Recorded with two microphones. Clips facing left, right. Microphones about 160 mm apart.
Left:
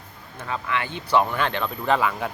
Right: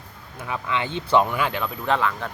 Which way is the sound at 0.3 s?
15° right (ahead or behind).